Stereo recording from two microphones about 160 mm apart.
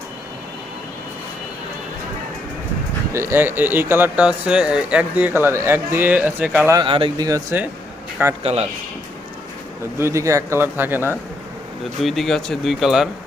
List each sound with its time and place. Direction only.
3.1 s speech: 15° right (ahead or behind)
6.7 s speech: 35° right (ahead or behind)
7.3 s speech: 20° right (ahead or behind)
8.2 s speech: 10° right (ahead or behind)
10.0 s speech: 20° right (ahead or behind)
11.9 s speech: centre (ahead or behind)